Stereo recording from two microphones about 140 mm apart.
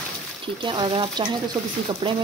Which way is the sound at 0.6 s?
35° right (ahead or behind).